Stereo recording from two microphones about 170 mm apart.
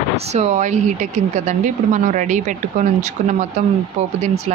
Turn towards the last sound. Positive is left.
turn(degrees=-40)  # may be behind; listen again after turning